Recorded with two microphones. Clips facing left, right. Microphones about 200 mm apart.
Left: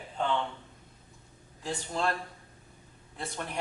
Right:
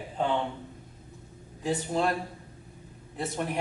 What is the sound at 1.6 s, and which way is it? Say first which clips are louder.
Speech: right 5 dB; 5° right (ahead or behind).